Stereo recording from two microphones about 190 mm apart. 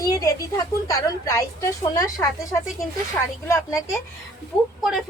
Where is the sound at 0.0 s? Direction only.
20° left (ahead or behind).